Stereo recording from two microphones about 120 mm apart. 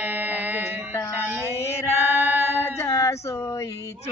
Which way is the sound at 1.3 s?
20° right (ahead or behind).